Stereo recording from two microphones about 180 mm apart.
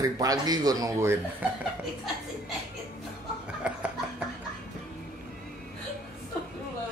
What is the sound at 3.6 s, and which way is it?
Chuckle, 5° right (ahead or behind).